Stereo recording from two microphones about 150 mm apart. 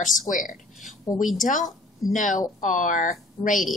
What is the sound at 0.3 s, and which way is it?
Speech, 60° left (ahead or behind).